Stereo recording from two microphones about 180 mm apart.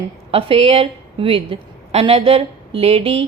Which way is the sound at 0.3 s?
30° right (ahead or behind).